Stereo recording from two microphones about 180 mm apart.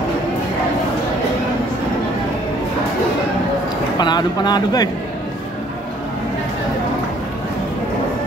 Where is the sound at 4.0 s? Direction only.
25° left (ahead or behind).